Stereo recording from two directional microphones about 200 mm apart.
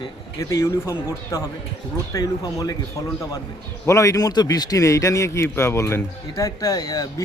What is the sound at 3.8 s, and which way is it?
A man's voice, 15° left (ahead or behind).